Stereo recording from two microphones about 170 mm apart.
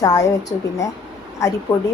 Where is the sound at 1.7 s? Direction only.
15° left (ahead or behind).